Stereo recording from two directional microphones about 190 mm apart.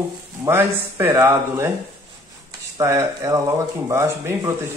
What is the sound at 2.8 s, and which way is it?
Speech, 15° right (ahead or behind).